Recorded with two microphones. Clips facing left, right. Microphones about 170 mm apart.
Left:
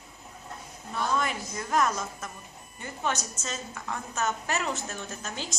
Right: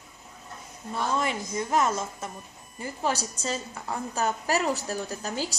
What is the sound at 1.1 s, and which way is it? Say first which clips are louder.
A woman's voice: right 2 dB; 30° right (ahead or behind).